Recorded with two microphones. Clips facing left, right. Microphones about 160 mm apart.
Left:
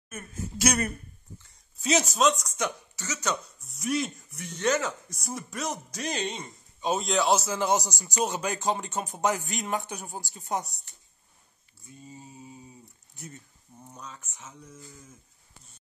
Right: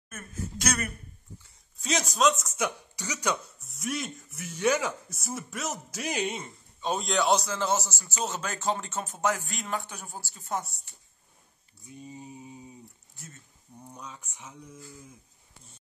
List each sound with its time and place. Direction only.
0.1 s a man's voice: 10° left (ahead or behind)
1.8 s speech: 5° left (ahead or behind); by 3.3 s 15° right (ahead or behind)
3.6 s speech: centre (ahead or behind)
6.8 s a man's voice: 5° left (ahead or behind)
11.8 s mantra: 20° right (ahead or behind)
13.1 s speech: 20° left (ahead or behind)
13.8 s speech: 10° right (ahead or behind)